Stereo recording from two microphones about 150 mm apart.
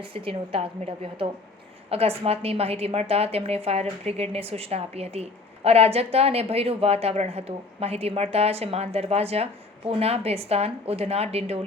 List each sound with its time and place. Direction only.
0.0 s a woman's voice: 35° right (ahead or behind)